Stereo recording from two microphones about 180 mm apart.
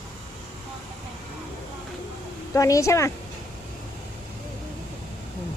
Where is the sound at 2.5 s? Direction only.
15° left (ahead or behind).